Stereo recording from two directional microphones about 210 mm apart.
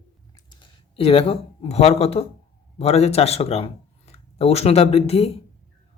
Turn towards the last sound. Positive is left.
turn(degrees=30)  # may be behind; listen again after turning